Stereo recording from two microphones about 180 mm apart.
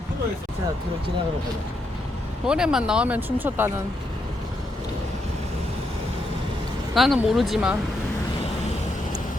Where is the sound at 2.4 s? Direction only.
5° right (ahead or behind).